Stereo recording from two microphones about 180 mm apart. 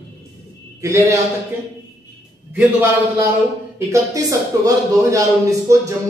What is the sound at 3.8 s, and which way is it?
Speech, 20° right (ahead or behind).